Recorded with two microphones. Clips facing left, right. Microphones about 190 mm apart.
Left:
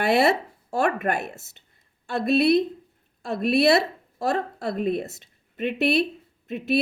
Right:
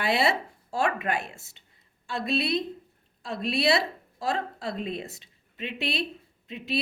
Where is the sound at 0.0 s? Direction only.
50° left (ahead or behind).